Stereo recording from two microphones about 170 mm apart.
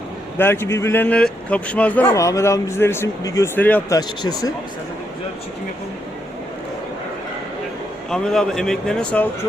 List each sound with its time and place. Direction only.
0.3 s speech: 15° left (ahead or behind)
2.1 s speech: 20° left (ahead or behind)
3.9 s speech: 20° left (ahead or behind)
8.1 s speech: 5° left (ahead or behind)